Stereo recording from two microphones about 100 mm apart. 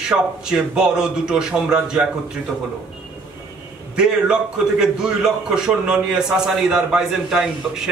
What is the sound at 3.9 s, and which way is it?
A man's voice, 10° right (ahead or behind).